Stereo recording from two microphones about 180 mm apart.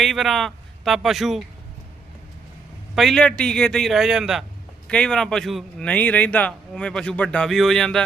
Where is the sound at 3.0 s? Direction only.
Centre (ahead or behind).